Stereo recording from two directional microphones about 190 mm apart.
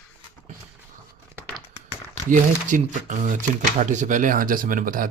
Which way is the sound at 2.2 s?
40° right (ahead or behind).